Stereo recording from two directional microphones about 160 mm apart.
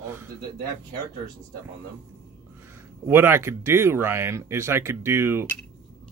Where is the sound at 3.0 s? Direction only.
15° right (ahead or behind).